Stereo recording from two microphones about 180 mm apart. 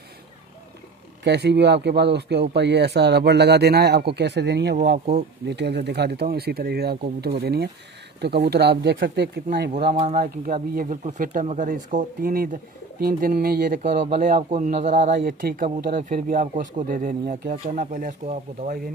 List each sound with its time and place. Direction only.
1.2 s speech: 70° right (ahead or behind)
4.9 s speech: 40° right (ahead or behind)
5.5 s speech: 70° right (ahead or behind)
10.1 s speech: 50° right (ahead or behind)